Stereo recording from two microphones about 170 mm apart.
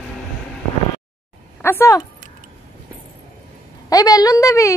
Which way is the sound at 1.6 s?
15° left (ahead or behind).